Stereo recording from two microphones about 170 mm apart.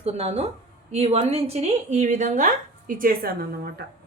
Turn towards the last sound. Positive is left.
turn(degrees=-75)  # may be behind; listen again after turning